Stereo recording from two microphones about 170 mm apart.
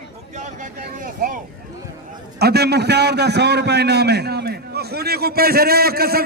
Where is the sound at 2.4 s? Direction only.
70° right (ahead or behind).